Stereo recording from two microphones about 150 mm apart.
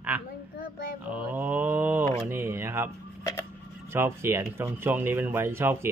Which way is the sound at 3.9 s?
15° right (ahead or behind).